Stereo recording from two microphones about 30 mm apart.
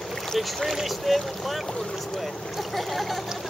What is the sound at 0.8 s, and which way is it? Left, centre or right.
Speech, centre.